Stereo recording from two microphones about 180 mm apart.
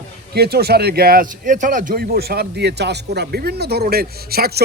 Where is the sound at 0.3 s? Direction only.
60° right (ahead or behind).